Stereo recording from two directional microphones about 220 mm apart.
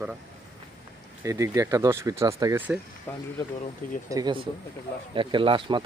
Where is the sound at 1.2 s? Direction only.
15° right (ahead or behind).